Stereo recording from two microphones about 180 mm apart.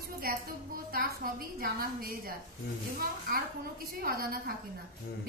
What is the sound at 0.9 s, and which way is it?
A woman's voice, 55° right (ahead or behind).